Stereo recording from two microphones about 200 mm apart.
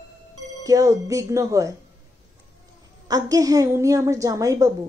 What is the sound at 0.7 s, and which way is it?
Speech, 15° right (ahead or behind).